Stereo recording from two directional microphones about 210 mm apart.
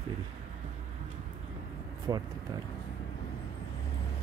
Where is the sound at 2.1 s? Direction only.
20° right (ahead or behind).